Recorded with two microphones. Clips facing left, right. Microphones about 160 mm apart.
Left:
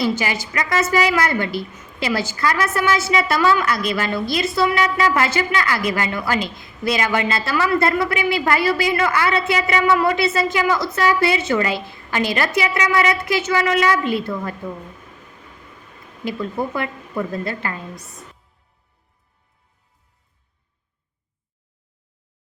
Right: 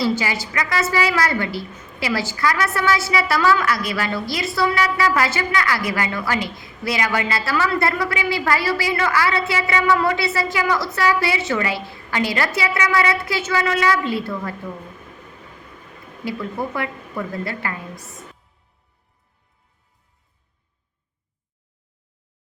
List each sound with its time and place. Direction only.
0.0 s a woman's voice: 20° left (ahead or behind)
16.4 s a woman's voice: 20° left (ahead or behind)